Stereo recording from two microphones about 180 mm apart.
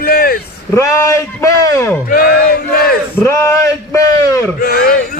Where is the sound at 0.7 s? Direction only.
15° left (ahead or behind).